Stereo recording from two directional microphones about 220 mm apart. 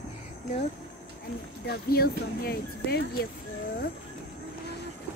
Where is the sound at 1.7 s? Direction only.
45° left (ahead or behind).